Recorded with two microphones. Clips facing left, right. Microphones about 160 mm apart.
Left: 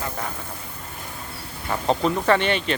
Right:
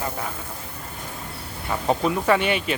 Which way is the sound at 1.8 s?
5° right (ahead or behind).